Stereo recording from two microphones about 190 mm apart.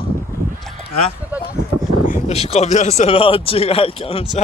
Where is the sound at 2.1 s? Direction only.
35° left (ahead or behind).